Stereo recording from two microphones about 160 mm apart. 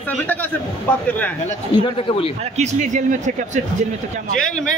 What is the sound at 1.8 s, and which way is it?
Speech, 35° left (ahead or behind).